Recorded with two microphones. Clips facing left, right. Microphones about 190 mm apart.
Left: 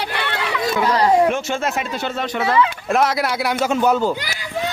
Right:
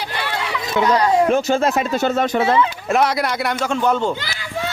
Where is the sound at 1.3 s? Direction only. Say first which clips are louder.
Right 5 dB; 35° right (ahead or behind).